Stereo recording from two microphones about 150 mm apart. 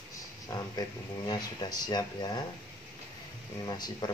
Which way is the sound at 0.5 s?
25° left (ahead or behind).